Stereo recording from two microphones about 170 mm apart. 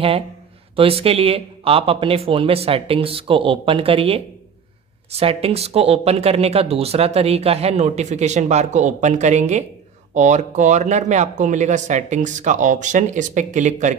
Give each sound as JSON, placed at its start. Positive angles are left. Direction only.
{"t": 0.7, "sound": "speech", "side_deg": -35}